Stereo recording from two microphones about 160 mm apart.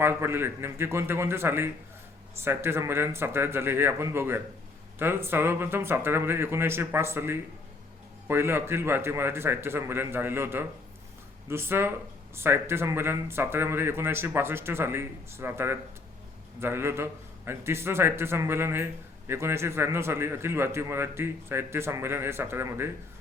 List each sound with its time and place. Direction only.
0.0 s speech: 15° right (ahead or behind)